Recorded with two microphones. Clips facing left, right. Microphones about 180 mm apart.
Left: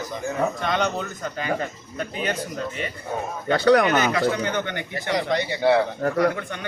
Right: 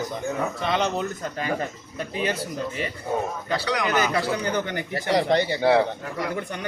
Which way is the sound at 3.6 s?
55° left (ahead or behind).